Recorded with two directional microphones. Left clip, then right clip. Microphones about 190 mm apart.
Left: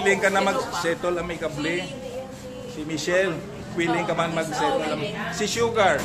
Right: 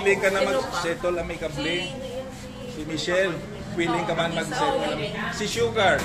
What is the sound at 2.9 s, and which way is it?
A woman's voice, 15° left (ahead or behind).